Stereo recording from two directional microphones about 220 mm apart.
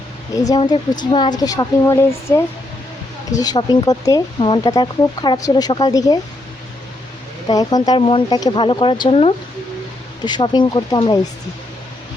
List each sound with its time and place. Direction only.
0.4 s a woman's voice: 20° left (ahead or behind)
3.4 s a woman's voice: 20° left (ahead or behind)
7.4 s speech: 20° left (ahead or behind)